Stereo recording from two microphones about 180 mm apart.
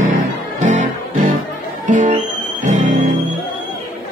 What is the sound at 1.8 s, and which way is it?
Music, 45° right (ahead or behind).